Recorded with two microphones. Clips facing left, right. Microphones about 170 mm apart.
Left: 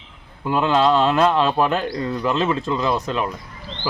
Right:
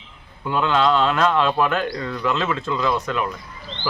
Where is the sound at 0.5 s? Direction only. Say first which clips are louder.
Left 2 dB; 35° left (ahead or behind).